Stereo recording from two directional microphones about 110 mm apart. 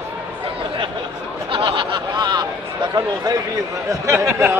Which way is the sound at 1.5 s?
50° right (ahead or behind).